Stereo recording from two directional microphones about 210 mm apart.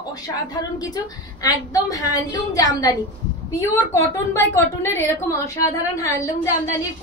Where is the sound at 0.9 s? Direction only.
20° left (ahead or behind).